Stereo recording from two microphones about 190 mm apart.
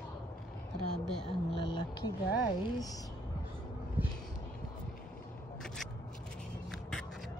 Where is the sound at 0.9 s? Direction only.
Centre (ahead or behind).